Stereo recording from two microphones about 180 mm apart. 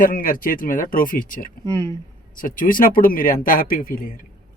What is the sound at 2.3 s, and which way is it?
Speech, 50° left (ahead or behind).